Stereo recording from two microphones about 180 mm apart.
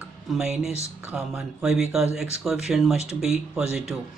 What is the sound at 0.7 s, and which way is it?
Speech, 15° left (ahead or behind).